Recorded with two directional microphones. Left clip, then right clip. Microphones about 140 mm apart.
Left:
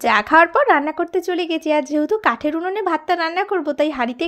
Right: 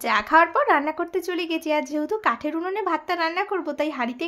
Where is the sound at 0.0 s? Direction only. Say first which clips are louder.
Left 5 dB; 40° left (ahead or behind).